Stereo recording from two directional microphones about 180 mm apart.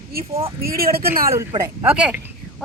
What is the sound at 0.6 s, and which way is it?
Speech, 55° right (ahead or behind).